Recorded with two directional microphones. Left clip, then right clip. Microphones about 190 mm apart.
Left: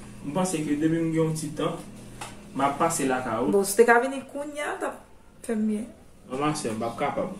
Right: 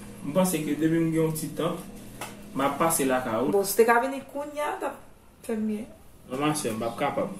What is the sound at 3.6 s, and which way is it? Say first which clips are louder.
A woman's voice: left 3 dB; 10° left (ahead or behind).